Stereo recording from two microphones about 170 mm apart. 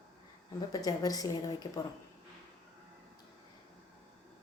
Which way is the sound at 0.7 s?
20° left (ahead or behind).